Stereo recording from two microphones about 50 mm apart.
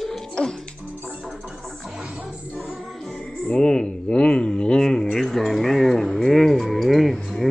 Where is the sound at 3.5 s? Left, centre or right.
Centre.